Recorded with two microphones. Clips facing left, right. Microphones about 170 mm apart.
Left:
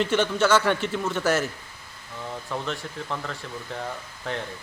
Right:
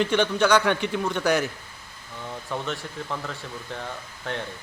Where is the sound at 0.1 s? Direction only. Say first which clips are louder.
Right 1 dB; 5° left (ahead or behind).